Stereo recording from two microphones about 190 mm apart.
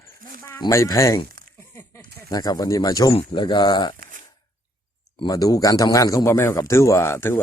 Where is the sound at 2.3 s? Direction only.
20° left (ahead or behind).